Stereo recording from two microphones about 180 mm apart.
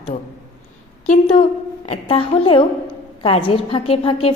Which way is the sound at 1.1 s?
40° left (ahead or behind).